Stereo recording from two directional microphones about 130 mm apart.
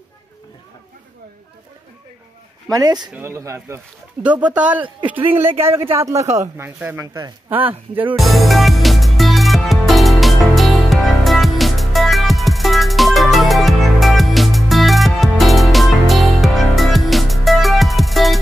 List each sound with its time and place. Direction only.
2.7 s speech: 30° right (ahead or behind); by 8.0 s 15° right (ahead or behind)
8.2 s music: centre (ahead or behind)